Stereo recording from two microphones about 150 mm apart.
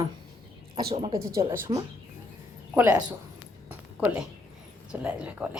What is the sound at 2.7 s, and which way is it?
Speech, 15° right (ahead or behind).